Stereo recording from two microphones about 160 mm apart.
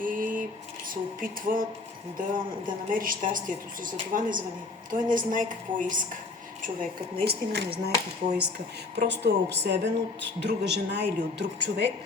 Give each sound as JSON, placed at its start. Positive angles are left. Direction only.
{"t": 0.0, "sound": "a sound", "side_deg": -60}
{"t": 1.2, "sound": "a woman's voice", "side_deg": -60}
{"t": 2.9, "sound": "a woman's voice", "side_deg": -60}
{"t": 7.3, "sound": "speech", "side_deg": -90}